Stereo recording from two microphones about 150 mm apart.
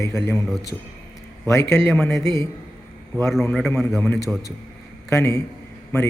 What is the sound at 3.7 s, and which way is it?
Speech, 5° left (ahead or behind).